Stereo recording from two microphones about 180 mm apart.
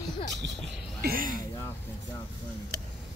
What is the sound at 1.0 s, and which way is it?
Music, 50° right (ahead or behind).